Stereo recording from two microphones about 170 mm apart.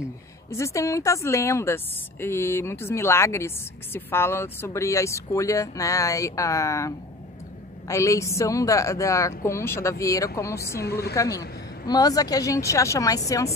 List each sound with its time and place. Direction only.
0.5 s a woman's voice: 15° left (ahead or behind)
7.9 s a woman's voice: 15° left (ahead or behind)
10.8 s a woman's voice: 70° left (ahead or behind)
11.1 s speech: 20° left (ahead or behind)